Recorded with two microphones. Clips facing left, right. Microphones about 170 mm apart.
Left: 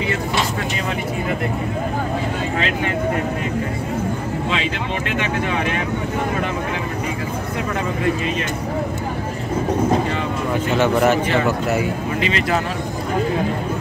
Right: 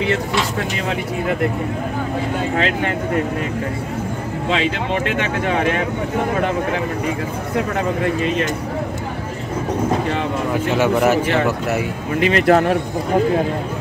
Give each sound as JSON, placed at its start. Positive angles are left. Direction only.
{"t": 5.5, "sound": "speech", "side_deg": -45}
{"t": 10.8, "sound": "speech", "side_deg": -5}
{"t": 12.2, "sound": "speech", "side_deg": -55}